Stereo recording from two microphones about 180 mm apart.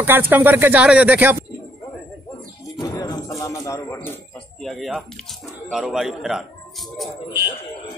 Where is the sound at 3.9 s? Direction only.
10° left (ahead or behind).